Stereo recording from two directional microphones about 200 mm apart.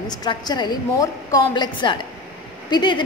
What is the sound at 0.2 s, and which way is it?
A woman's voice, 20° left (ahead or behind).